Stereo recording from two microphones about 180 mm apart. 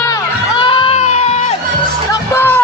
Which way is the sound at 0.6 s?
30° left (ahead or behind).